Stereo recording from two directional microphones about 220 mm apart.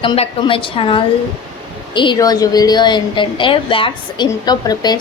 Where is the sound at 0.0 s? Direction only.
25° left (ahead or behind).